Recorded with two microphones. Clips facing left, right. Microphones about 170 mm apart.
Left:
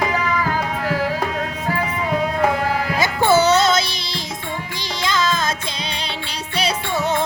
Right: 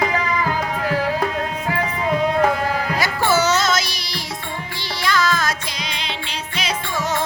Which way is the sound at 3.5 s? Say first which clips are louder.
Left 4 dB; 25° left (ahead or behind).